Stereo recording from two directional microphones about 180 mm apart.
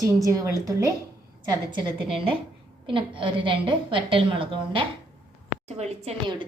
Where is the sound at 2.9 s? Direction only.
30° right (ahead or behind).